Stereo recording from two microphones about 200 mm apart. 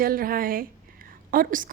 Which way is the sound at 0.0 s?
45° right (ahead or behind).